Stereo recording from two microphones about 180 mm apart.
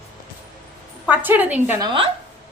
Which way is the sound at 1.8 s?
30° right (ahead or behind).